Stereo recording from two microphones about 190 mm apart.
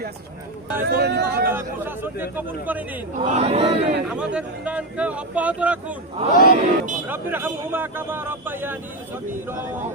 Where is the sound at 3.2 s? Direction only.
35° right (ahead or behind).